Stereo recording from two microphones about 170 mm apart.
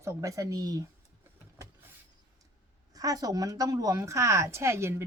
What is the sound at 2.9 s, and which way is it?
Speech, 20° right (ahead or behind).